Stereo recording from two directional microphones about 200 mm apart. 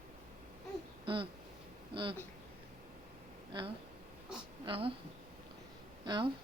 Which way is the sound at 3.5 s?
25° right (ahead or behind).